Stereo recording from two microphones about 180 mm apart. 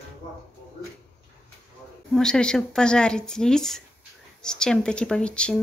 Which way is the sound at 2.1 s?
5° left (ahead or behind).